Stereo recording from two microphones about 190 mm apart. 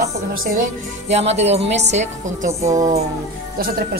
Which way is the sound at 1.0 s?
35° right (ahead or behind).